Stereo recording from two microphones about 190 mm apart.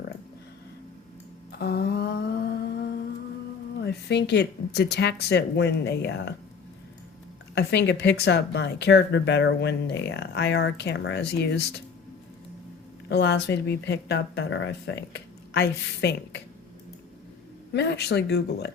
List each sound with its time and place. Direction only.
1.5 s humming: 60° left (ahead or behind)
3.8 s speech: 60° left (ahead or behind)
7.5 s speech: 65° left (ahead or behind)
13.1 s speech: 60° left (ahead or behind)
17.7 s speech: 60° left (ahead or behind)